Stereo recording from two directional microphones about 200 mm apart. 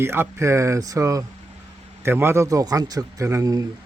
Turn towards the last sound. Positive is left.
turn(degrees=-15)  # may be behind; listen again after turning